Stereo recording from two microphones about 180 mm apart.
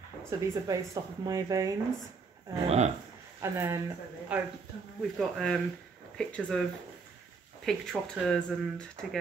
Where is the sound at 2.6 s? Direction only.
40° right (ahead or behind).